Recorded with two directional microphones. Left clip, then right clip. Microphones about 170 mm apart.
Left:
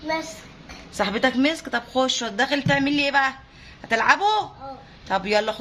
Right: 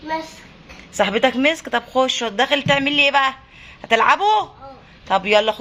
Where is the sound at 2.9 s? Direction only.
20° right (ahead or behind).